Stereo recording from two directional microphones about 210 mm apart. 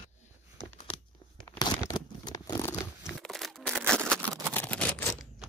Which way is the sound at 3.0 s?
Centre (ahead or behind).